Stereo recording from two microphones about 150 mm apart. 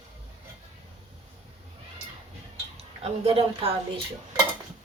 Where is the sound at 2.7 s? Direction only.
40° right (ahead or behind).